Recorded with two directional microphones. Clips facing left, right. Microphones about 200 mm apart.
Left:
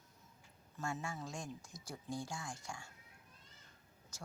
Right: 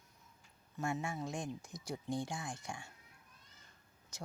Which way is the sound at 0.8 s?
20° right (ahead or behind).